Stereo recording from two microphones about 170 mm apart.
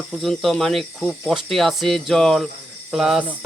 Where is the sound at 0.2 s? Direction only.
Centre (ahead or behind).